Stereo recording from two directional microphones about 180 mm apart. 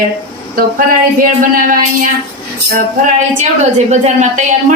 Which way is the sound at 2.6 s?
45° right (ahead or behind).